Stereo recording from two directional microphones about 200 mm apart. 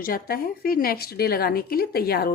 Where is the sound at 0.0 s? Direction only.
45° left (ahead or behind).